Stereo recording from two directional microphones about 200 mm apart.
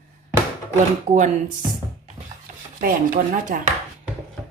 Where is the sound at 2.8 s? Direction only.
45° right (ahead or behind).